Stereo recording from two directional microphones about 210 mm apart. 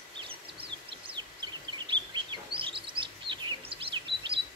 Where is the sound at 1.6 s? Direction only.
20° right (ahead or behind).